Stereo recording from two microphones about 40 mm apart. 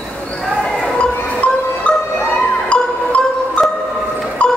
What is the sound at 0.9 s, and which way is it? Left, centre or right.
Music, left.